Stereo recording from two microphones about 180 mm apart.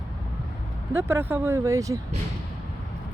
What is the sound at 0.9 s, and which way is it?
Speech, 10° right (ahead or behind).